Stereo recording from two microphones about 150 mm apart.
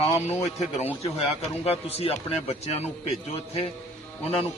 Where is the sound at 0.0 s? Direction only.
40° left (ahead or behind).